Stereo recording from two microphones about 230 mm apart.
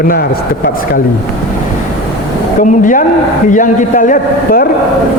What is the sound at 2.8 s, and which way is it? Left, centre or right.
A man's voice, left.